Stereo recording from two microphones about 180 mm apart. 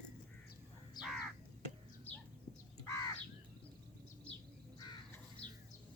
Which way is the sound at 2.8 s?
15° left (ahead or behind).